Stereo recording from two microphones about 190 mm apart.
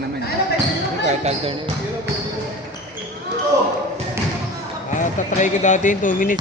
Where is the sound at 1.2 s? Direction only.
35° right (ahead or behind).